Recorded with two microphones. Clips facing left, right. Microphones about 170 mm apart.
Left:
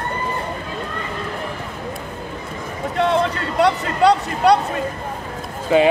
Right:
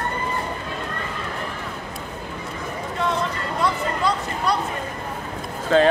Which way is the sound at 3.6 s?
70° left (ahead or behind).